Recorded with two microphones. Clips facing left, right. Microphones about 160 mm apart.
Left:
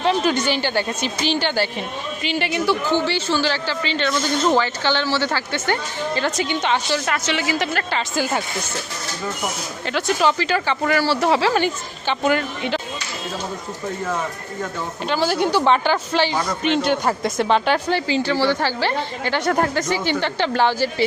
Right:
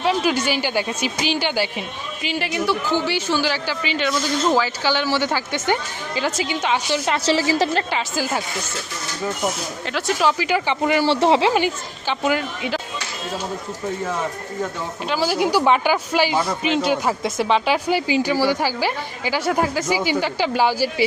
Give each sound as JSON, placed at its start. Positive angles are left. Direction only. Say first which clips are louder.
{"t": 0.0, "sound": "a woman's voice", "louder": "left 1 dB", "side_deg": -5}
{"t": 2.9, "sound": "a woman's voice", "louder": "left 1 dB", "side_deg": -10}
{"t": 7.0, "sound": "speech", "louder": "right 4 dB", "side_deg": -30}
{"t": 7.9, "sound": "speech", "louder": "left 1 dB", "side_deg": -5}
{"t": 9.8, "sound": "speech", "louder": "left 1 dB", "side_deg": 0}
{"t": 10.4, "sound": "speech", "louder": "right 1 dB", "side_deg": -15}
{"t": 11.6, "sound": "speech", "louder": "left 1 dB", "side_deg": -5}
{"t": 14.6, "sound": "a woman's voice", "louder": "even", "side_deg": -5}